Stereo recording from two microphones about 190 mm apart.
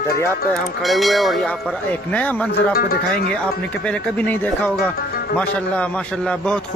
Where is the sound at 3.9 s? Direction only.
10° left (ahead or behind).